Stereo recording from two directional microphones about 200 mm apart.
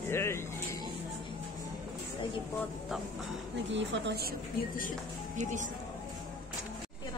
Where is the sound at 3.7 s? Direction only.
65° right (ahead or behind).